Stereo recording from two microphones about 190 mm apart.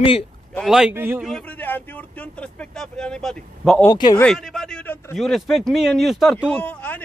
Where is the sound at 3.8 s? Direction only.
20° left (ahead or behind).